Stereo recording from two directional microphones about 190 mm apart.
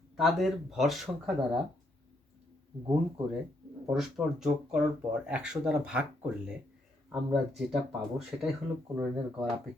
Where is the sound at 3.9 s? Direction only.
Centre (ahead or behind).